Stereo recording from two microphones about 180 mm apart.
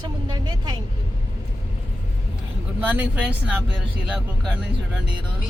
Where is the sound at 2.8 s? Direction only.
10° right (ahead or behind).